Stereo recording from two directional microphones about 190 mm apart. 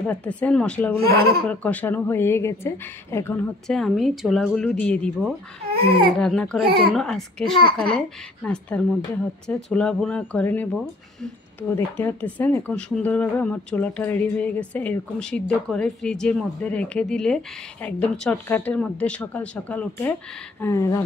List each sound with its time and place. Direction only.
0.1 s speech: 5° left (ahead or behind)
1.0 s speech: 55° right (ahead or behind)
1.4 s speech: 5° left (ahead or behind)
3.6 s speech: centre (ahead or behind)
5.7 s baby cry: 50° right (ahead or behind)
6.1 s speech: 5° left (ahead or behind)
11.7 s speech: 10° left (ahead or behind)